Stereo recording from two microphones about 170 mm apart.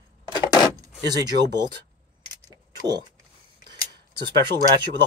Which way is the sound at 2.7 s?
25° right (ahead or behind).